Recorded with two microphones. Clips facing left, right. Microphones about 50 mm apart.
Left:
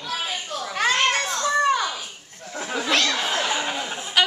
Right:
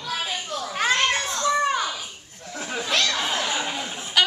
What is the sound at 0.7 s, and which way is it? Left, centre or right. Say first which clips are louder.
Children playing: left 1 dB; left.